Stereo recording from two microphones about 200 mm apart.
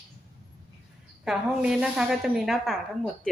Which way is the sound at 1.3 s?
5° right (ahead or behind).